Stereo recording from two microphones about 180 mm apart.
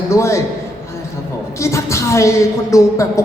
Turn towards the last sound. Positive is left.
turn(degrees=15)  # may be behind; listen again after turning